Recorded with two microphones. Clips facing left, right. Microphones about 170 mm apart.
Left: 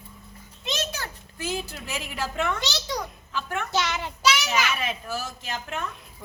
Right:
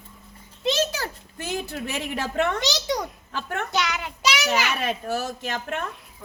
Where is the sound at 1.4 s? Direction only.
60° right (ahead or behind).